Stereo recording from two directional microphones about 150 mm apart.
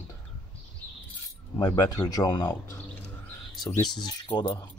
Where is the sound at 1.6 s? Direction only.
25° left (ahead or behind).